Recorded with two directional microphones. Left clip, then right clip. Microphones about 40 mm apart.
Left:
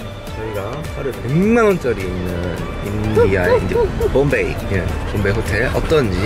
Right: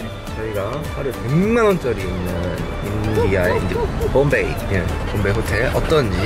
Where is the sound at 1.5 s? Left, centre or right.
Centre.